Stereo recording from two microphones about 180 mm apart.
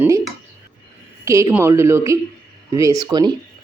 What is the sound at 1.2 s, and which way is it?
Speech, 15° right (ahead or behind).